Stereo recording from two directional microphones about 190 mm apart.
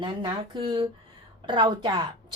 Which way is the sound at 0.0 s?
25° right (ahead or behind).